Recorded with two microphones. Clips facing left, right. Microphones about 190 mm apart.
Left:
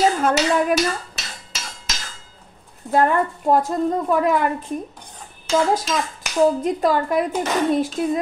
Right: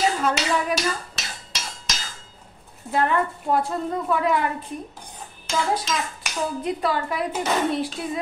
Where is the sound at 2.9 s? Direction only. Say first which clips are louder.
Left 4 dB; 45° left (ahead or behind).